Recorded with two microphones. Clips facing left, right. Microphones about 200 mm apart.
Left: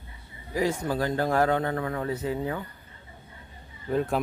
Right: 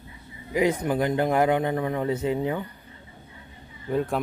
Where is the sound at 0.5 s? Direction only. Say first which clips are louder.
Right 4 dB; 20° right (ahead or behind).